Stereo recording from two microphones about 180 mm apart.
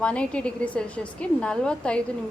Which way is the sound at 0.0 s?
5° left (ahead or behind).